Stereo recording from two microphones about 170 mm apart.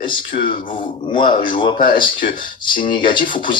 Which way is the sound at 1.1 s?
30° left (ahead or behind).